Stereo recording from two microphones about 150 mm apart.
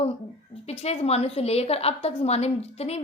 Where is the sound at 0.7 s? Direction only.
45° left (ahead or behind).